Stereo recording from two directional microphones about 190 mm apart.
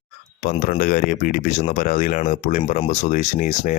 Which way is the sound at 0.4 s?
45° left (ahead or behind).